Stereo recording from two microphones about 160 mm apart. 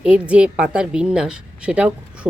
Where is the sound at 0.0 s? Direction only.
5° right (ahead or behind).